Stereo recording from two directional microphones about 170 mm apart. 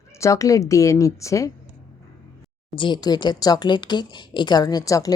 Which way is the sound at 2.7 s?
30° left (ahead or behind).